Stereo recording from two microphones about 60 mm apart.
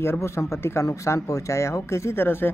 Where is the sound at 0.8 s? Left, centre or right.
Left.